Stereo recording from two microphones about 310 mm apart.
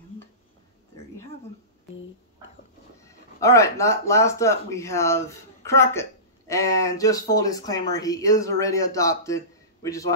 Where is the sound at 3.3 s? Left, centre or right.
Centre.